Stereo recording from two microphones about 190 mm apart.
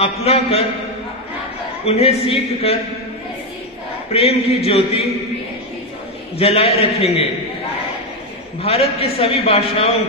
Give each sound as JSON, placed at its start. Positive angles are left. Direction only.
{"t": 0.0, "sound": "a man's voice", "side_deg": 30}
{"t": 1.9, "sound": "a man's voice", "side_deg": 30}
{"t": 4.1, "sound": "a man's voice", "side_deg": 30}
{"t": 6.3, "sound": "a man's voice", "side_deg": 30}
{"t": 8.6, "sound": "a man's voice", "side_deg": 30}